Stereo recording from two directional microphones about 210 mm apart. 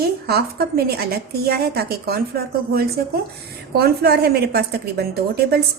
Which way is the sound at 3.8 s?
50° right (ahead or behind).